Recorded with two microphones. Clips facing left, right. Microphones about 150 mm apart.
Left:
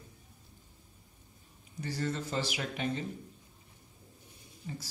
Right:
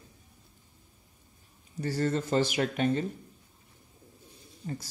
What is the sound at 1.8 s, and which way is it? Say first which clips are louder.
Speech: right 6 dB; 45° right (ahead or behind).